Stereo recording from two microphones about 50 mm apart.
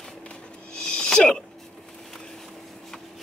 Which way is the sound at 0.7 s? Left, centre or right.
Centre.